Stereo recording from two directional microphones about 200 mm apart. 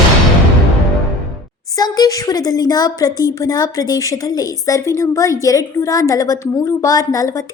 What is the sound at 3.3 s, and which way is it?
A woman's voice, 20° left (ahead or behind).